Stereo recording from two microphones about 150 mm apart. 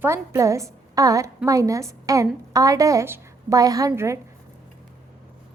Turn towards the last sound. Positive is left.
turn(degrees=-20)  # may be behind; listen again after turning